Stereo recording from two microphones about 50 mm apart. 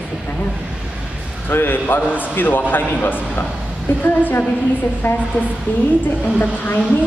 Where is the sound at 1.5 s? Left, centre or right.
Left.